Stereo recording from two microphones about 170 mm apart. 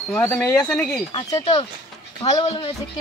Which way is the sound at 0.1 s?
10° left (ahead or behind).